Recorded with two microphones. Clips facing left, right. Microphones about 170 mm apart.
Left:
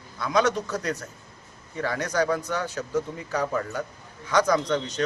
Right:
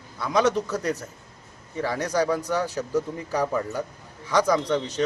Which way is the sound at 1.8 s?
35° right (ahead or behind).